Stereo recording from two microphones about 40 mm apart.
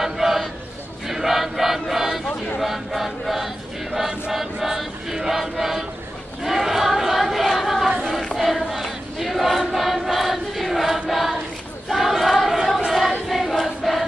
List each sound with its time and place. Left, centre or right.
0.0 s a sound: centre
1.0 s choir: centre
2.6 s chant: centre
4.3 s choir: centre
6.4 s a sound: centre
8.6 s choir: centre